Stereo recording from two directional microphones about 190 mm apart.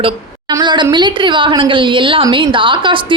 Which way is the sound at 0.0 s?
25° right (ahead or behind).